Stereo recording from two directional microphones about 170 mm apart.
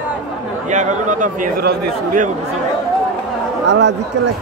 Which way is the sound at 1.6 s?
70° right (ahead or behind).